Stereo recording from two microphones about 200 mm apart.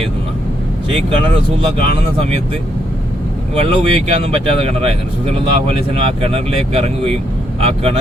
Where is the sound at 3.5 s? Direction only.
30° right (ahead or behind).